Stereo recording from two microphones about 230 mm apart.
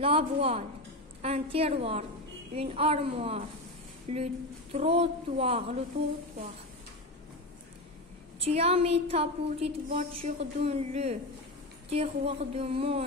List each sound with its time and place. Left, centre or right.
0.0 s a woman's voice: right
8.5 s a woman's voice: right